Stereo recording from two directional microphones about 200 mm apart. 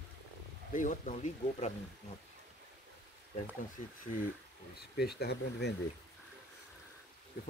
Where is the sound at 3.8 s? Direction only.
40° left (ahead or behind).